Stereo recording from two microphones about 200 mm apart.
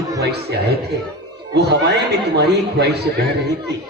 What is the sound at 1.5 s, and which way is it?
A man's voice, 60° right (ahead or behind).